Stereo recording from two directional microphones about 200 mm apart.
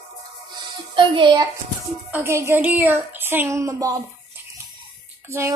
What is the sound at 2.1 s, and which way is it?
Speech, 15° right (ahead or behind).